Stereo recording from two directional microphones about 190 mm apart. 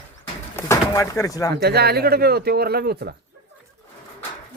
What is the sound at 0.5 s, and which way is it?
Speech, 15° left (ahead or behind).